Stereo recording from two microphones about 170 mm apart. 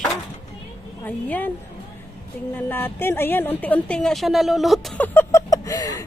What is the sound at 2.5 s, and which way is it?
A woman's voice, 10° left (ahead or behind).